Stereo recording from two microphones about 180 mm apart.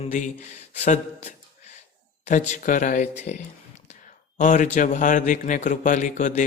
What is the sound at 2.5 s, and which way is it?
Speech, 45° left (ahead or behind).